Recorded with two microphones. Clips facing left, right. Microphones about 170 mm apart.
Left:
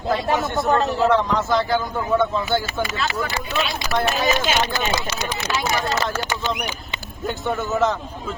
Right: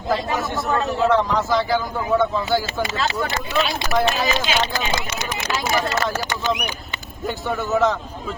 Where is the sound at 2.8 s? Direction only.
30° right (ahead or behind).